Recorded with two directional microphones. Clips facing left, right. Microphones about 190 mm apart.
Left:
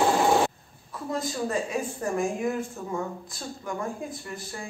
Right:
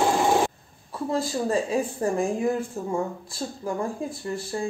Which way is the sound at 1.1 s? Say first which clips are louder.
Right 4 dB; 30° right (ahead or behind).